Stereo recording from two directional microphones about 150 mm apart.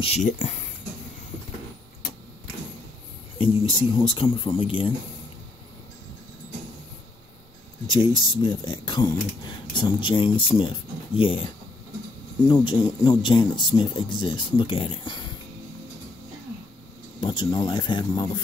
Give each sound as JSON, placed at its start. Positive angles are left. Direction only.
{"t": 0.0, "sound": "speech", "side_deg": 50}
{"t": 3.3, "sound": "speech", "side_deg": 35}
{"t": 7.9, "sound": "speech", "side_deg": 35}
{"t": 12.4, "sound": "speech", "side_deg": 30}
{"t": 17.2, "sound": "speech", "side_deg": 30}